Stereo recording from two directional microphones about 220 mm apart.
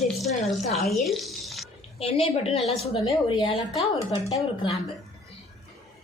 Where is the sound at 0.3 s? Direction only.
30° left (ahead or behind).